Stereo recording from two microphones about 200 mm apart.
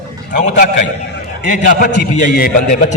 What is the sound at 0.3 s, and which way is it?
A man's voice, 40° left (ahead or behind).